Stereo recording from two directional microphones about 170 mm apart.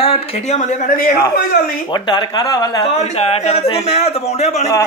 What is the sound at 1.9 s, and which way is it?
Speech, 25° left (ahead or behind).